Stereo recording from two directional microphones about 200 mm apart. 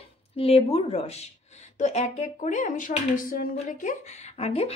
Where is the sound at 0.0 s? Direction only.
30° left (ahead or behind).